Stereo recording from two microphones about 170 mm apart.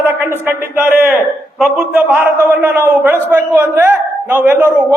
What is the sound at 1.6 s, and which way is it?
A man's voice, 10° right (ahead or behind).